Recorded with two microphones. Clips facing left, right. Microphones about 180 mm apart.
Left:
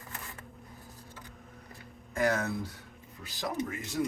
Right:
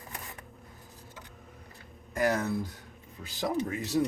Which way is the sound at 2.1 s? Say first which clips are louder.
Right 1 dB; 15° right (ahead or behind).